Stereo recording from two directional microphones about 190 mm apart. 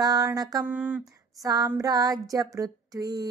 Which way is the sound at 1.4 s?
20° right (ahead or behind).